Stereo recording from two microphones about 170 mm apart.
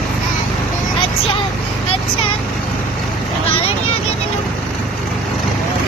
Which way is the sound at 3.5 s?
35° left (ahead or behind).